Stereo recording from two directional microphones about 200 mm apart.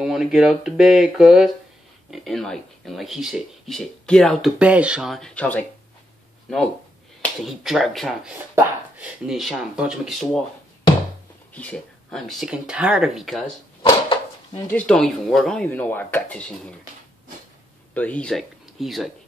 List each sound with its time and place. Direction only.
0.0 s speech: 5° right (ahead or behind)
7.2 s speech: centre (ahead or behind)
11.5 s speech: 5° left (ahead or behind)
13.8 s a sound: 25° left (ahead or behind)
14.7 s speech: 5° left (ahead or behind)
17.9 s speech: 5° left (ahead or behind)